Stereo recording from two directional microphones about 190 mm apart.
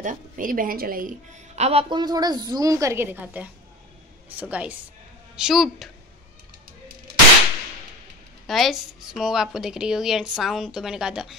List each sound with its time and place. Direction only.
0.0 s a woman's voice: 45° right (ahead or behind); by 5.9 s centre (ahead or behind)
8.5 s a woman's voice: centre (ahead or behind)